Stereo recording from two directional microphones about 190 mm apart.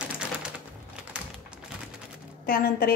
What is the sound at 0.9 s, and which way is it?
Typing, 5° right (ahead or behind).